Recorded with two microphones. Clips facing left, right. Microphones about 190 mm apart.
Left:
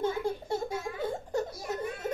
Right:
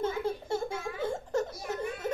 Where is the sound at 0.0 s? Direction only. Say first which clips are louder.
Left 1 dB; 15° left (ahead or behind).